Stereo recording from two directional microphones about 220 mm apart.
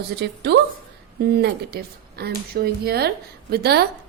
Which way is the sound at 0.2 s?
50° right (ahead or behind).